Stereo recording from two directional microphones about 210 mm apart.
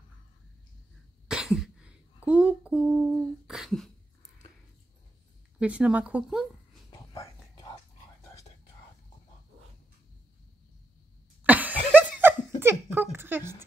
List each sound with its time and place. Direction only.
1.3 s a sound: 5° right (ahead or behind)
3.4 s throat clearing: centre (ahead or behind)
5.6 s speech: 5° right (ahead or behind)
6.9 s a sound: 20° left (ahead or behind)
11.4 s laughter: 5° right (ahead or behind)
12.9 s speech: 10° right (ahead or behind)